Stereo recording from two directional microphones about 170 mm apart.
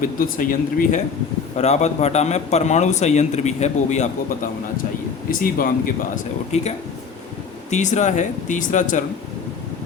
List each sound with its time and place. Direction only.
0.0 s a man's voice: 55° left (ahead or behind)
5.3 s speech: 55° left (ahead or behind)
6.5 s a man's voice: 40° left (ahead or behind)
7.7 s speech: 45° left (ahead or behind)